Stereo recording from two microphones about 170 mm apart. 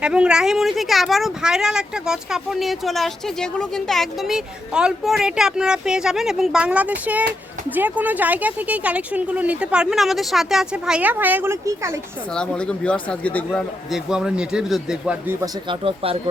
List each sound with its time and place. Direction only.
0.0 s speech: 5° right (ahead or behind)
12.3 s speech: 5° left (ahead or behind)
15.7 s speech: 30° right (ahead or behind)